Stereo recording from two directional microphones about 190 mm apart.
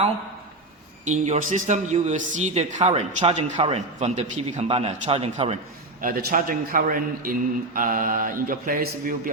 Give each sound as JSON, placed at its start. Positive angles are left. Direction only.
{"t": 1.0, "sound": "speech", "side_deg": -40}
{"t": 6.0, "sound": "a man's voice", "side_deg": -45}